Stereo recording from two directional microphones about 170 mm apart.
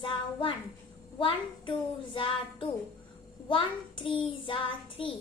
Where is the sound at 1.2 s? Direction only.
30° left (ahead or behind).